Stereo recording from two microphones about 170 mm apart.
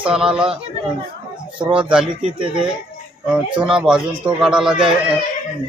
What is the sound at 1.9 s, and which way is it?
Speech, 5° right (ahead or behind).